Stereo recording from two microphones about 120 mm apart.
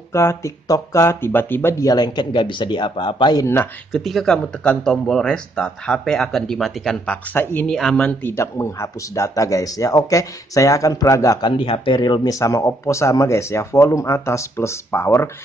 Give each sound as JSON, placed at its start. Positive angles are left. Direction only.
{"t": 0.1, "sound": "speech", "side_deg": 25}
{"t": 3.9, "sound": "speech", "side_deg": 0}
{"t": 7.3, "sound": "speech", "side_deg": 15}
{"t": 11.4, "sound": "speech", "side_deg": 50}